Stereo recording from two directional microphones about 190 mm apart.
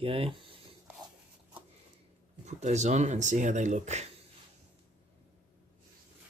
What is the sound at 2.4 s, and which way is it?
Speech, 40° right (ahead or behind).